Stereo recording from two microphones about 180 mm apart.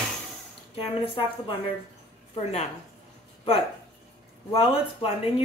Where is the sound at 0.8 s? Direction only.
30° left (ahead or behind).